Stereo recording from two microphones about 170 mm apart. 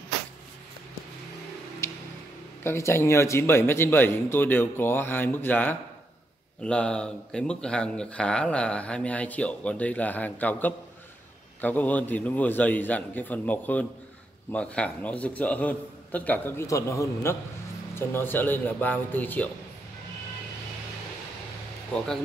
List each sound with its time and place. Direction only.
1.8 s a sound: 15° left (ahead or behind)
2.6 s speech: 15° left (ahead or behind)
21.9 s speech: 5° left (ahead or behind)